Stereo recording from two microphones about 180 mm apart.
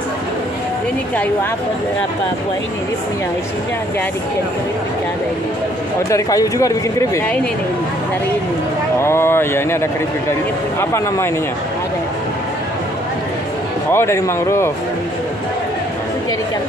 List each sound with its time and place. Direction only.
6.0 s speech: 20° left (ahead or behind)
9.0 s speech: 15° left (ahead or behind)
13.9 s speech: 15° left (ahead or behind)